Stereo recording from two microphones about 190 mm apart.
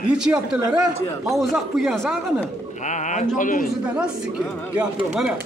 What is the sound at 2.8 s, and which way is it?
Speech, 40° left (ahead or behind).